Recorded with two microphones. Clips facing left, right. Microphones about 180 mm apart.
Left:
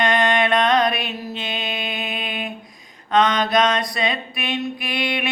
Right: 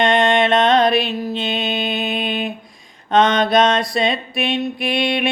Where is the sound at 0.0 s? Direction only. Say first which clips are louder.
Right 4 dB; 25° right (ahead or behind).